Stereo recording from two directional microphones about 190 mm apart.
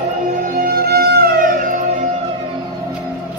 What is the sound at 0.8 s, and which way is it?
Music, 55° right (ahead or behind).